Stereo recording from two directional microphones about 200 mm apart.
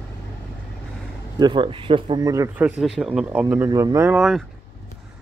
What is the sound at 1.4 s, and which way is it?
Speech, 25° right (ahead or behind).